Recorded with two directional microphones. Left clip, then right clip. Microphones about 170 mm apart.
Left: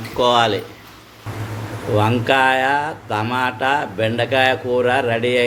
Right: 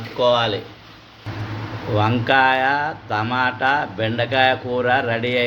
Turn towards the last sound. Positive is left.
turn(degrees=10)  # may be behind; listen again after turning